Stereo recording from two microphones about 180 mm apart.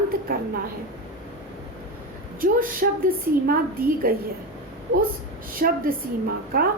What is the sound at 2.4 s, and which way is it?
A woman's voice, 50° right (ahead or behind).